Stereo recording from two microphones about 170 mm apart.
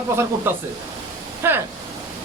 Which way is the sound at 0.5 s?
15° right (ahead or behind).